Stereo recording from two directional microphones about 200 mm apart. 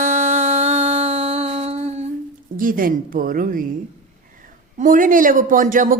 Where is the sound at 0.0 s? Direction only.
40° right (ahead or behind).